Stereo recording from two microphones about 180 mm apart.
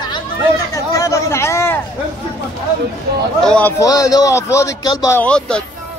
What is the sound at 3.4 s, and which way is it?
A man's voice, 5° left (ahead or behind).